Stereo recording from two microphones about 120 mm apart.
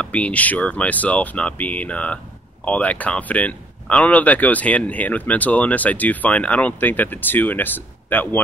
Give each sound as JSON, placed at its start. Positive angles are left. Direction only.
{"t": 0.0, "sound": "speech", "side_deg": 10}